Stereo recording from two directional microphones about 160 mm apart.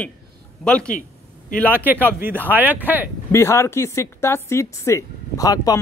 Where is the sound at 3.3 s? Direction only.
15° left (ahead or behind).